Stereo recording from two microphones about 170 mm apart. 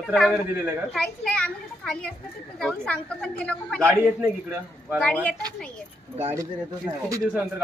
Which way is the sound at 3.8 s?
10° right (ahead or behind).